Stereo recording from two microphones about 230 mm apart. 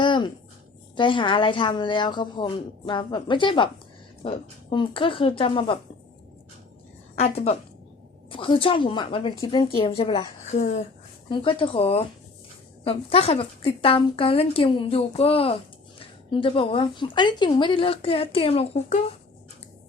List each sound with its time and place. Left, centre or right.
0.0 s a sound: centre
0.9 s a woman's voice: left
7.2 s a woman's voice: left
11.3 s a woman's voice: left